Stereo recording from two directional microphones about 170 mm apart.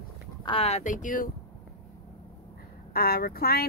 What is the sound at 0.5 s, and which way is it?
Speech, 35° left (ahead or behind).